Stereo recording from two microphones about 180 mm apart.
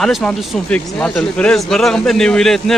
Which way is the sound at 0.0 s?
Centre (ahead or behind).